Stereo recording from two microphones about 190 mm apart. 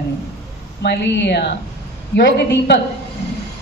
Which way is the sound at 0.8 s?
60° left (ahead or behind).